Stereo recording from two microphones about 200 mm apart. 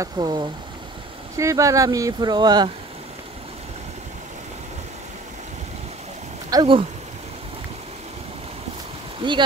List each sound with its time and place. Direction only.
0.0 s speech: 20° right (ahead or behind)
6.5 s speech: 25° right (ahead or behind)